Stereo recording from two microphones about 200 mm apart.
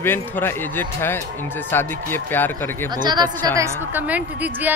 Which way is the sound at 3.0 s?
20° right (ahead or behind).